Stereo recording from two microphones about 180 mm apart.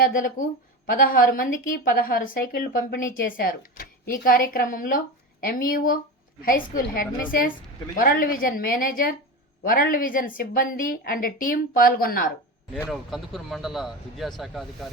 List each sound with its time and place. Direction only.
0.0 s a woman's voice: 50° left (ahead or behind)
12.9 s speech: centre (ahead or behind)